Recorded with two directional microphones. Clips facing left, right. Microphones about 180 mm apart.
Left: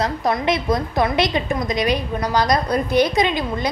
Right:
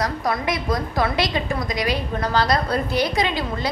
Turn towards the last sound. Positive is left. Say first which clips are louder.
# left 3 dB
turn(degrees=20)  # may be behind; listen again after turning